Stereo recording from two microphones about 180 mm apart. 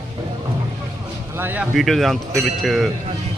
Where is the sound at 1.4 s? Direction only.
10° right (ahead or behind).